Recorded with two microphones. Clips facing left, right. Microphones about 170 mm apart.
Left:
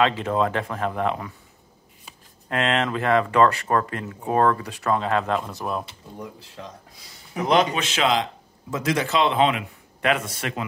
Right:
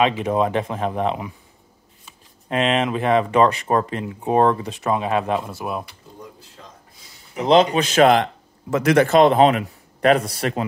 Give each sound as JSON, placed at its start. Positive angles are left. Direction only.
{"t": 0.0, "sound": "speech", "side_deg": -15}
{"t": 2.5, "sound": "speech", "side_deg": -20}
{"t": 6.1, "sound": "speech", "side_deg": 65}
{"t": 7.3, "sound": "a man's voice", "side_deg": -30}